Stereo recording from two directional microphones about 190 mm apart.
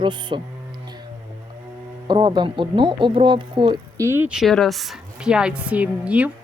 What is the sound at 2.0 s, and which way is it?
Speech, 25° right (ahead or behind).